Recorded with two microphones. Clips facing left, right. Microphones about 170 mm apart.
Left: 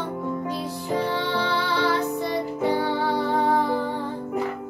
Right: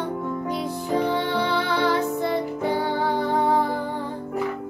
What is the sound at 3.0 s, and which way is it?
Music, 15° right (ahead or behind).